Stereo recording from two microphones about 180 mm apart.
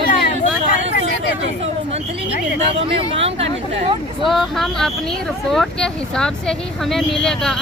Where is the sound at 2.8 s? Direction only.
30° right (ahead or behind).